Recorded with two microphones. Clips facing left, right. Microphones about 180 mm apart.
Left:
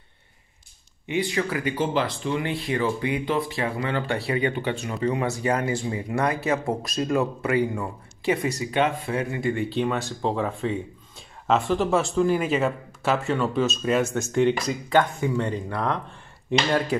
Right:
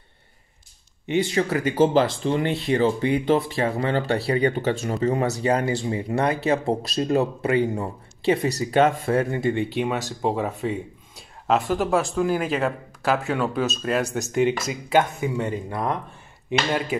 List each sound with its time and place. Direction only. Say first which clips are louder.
1.0 s speech: right 3 dB; 30° right (ahead or behind)
3.5 s speech: right 4 dB; 40° right (ahead or behind)
9.4 s speech: right 2 dB; 25° right (ahead or behind)
10.2 s speech: right 1 dB; 5° right (ahead or behind)
14.0 s speech: even; 35° right (ahead or behind)
14.3 s speech: even; 5° right (ahead or behind)